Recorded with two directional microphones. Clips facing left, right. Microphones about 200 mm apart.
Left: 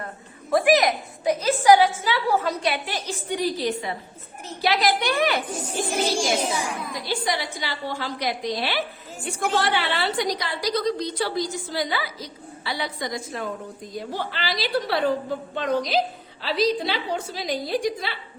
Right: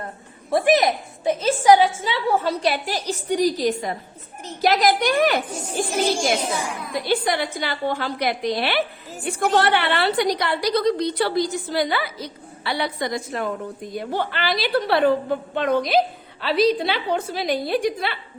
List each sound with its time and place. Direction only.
0.5 s a woman's voice: 25° right (ahead or behind); by 18.2 s 60° right (ahead or behind)